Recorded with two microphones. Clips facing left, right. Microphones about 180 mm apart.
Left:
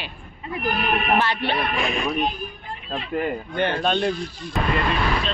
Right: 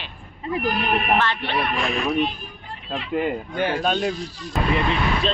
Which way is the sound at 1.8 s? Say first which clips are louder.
Right 1 dB; centre (ahead or behind).